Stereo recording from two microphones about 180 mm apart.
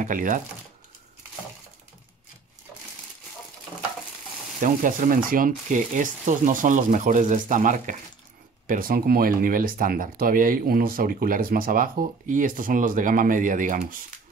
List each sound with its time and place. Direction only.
0.0 s speech: 50° right (ahead or behind)
4.6 s speech: 45° right (ahead or behind)